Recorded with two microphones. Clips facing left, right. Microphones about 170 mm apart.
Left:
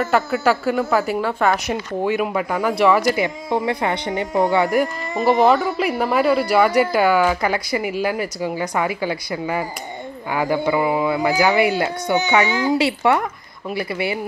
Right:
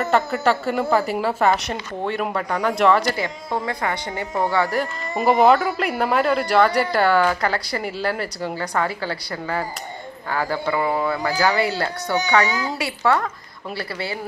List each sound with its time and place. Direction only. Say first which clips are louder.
0.1 s a woman's voice: even; 5° left (ahead or behind)
3.4 s speech: left 3 dB; 20° left (ahead or behind)
5.2 s a woman's voice: even; centre (ahead or behind); by 14.2 s 15° left (ahead or behind)